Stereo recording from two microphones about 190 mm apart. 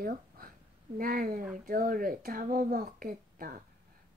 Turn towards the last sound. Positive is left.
turn(degrees=-50)  # may be behind; listen again after turning